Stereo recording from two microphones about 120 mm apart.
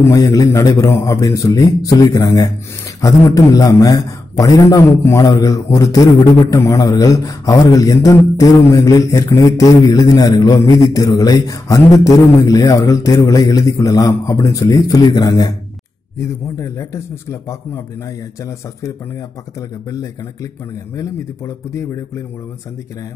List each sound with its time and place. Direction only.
0.0 s a man's voice: 30° left (ahead or behind)
21.7 s a man's voice: 25° left (ahead or behind)